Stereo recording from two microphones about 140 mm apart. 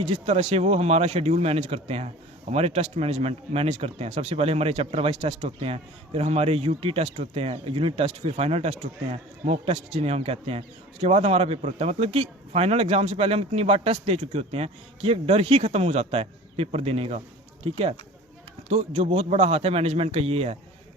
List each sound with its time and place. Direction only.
0.1 s a man's voice: 50° right (ahead or behind)
18.7 s a man's voice: 50° right (ahead or behind)